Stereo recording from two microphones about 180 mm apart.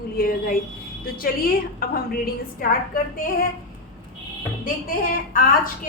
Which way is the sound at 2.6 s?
55° left (ahead or behind).